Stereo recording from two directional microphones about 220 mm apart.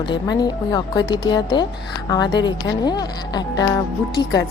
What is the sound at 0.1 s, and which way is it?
Speech, 20° left (ahead or behind).